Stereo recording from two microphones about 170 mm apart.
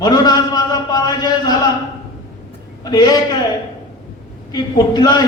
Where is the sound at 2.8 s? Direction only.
20° left (ahead or behind).